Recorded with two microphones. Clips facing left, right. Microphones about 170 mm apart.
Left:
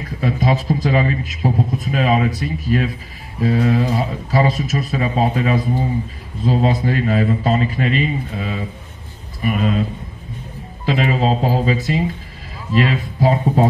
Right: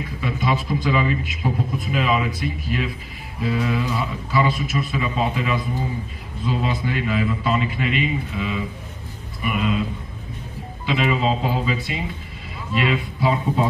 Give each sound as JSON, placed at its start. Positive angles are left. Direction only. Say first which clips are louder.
{"t": 0.2, "sound": "a man's voice", "louder": "left 5 dB", "side_deg": 40}
{"t": 10.9, "sound": "a man's voice", "louder": "left 3 dB", "side_deg": 45}